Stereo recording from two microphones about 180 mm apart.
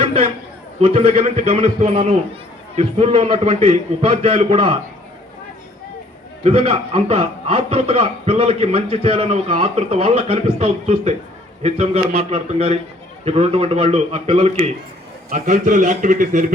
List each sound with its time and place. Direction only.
0.0 s a sound: 30° right (ahead or behind)
0.8 s a man's voice: 35° right (ahead or behind)
6.4 s a man's voice: 35° right (ahead or behind)
15.3 s a man's voice: 45° right (ahead or behind)